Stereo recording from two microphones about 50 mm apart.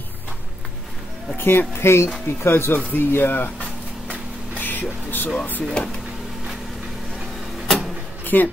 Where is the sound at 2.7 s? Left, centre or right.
Left.